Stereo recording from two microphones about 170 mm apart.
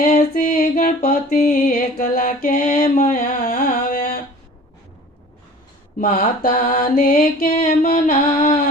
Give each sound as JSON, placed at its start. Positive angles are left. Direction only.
{"t": 0.0, "sound": "music", "side_deg": 50}
{"t": 6.0, "sound": "mantra", "side_deg": 50}